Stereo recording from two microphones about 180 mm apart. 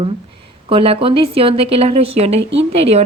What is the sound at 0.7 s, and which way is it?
Speech, 30° right (ahead or behind).